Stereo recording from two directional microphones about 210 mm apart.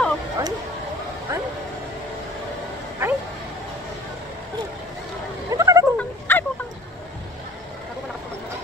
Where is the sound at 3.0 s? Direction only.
10° right (ahead or behind).